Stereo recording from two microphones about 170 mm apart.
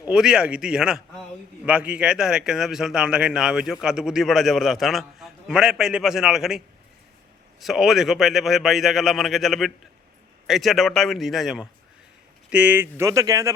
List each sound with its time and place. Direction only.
0.0 s speech: 5° right (ahead or behind)
7.6 s speech: centre (ahead or behind); by 13.5 s 20° right (ahead or behind)